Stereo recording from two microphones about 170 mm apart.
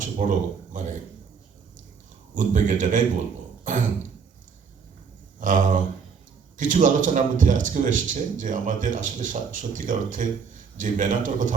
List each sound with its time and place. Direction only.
0.0 s a man's voice: 50° right (ahead or behind)
2.3 s a man's voice: 50° right (ahead or behind)
5.4 s a man's voice: 50° right (ahead or behind)